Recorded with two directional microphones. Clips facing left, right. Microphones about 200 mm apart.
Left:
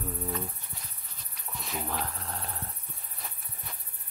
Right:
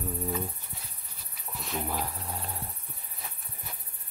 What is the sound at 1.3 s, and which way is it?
Dog, centre (ahead or behind).